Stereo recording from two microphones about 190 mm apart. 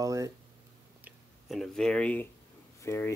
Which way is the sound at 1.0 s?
Centre (ahead or behind).